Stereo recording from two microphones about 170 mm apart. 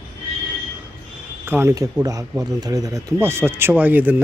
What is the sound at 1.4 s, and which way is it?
Speech, 15° right (ahead or behind).